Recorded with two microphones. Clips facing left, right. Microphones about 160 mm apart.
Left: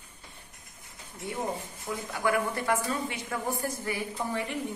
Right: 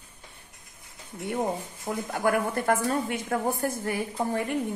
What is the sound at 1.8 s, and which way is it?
A woman's voice, 45° right (ahead or behind).